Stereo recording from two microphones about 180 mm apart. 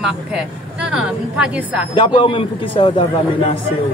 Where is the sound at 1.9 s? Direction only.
30° left (ahead or behind).